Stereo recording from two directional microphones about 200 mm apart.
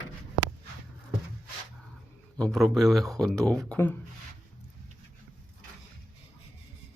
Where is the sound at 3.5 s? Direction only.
5° left (ahead or behind).